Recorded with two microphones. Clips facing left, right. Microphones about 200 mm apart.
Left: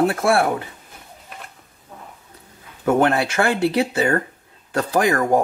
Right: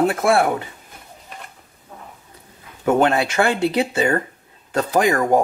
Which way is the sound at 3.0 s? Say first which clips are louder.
Right 1 dB; 20° right (ahead or behind).